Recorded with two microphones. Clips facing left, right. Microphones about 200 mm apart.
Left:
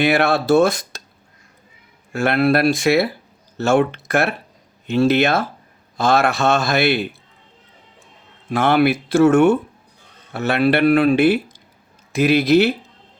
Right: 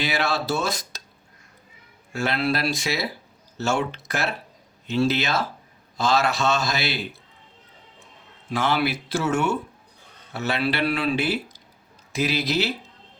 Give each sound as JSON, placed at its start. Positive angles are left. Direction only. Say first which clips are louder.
{"t": 0.0, "sound": "speech", "louder": "left 9 dB", "side_deg": 55}
{"t": 2.1, "sound": "speech", "louder": "left 8 dB", "side_deg": 55}
{"t": 8.4, "sound": "speech", "louder": "left 8 dB", "side_deg": 55}